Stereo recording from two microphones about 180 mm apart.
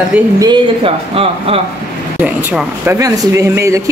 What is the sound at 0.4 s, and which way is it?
Speech, 25° right (ahead or behind).